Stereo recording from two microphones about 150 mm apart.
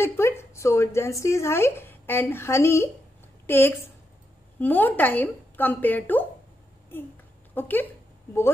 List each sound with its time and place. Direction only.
0.0 s a woman's voice: 15° left (ahead or behind)
7.5 s a woman's voice: 10° left (ahead or behind)